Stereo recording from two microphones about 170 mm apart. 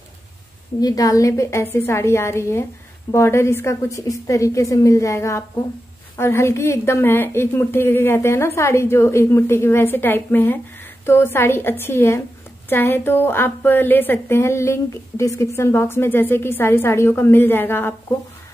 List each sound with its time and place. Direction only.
0.7 s a woman's voice: 20° left (ahead or behind)